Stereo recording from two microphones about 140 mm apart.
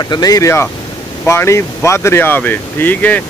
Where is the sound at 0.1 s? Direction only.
25° left (ahead or behind).